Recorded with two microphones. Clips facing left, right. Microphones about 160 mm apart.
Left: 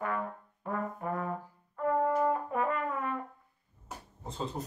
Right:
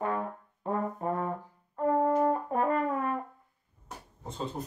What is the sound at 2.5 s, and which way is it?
Brass instrument, 40° right (ahead or behind).